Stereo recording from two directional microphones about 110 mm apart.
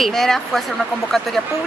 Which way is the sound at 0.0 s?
5° left (ahead or behind).